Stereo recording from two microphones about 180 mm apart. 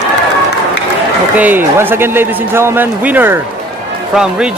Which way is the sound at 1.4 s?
10° right (ahead or behind).